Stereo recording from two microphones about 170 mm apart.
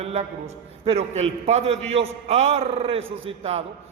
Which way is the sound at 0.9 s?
40° right (ahead or behind).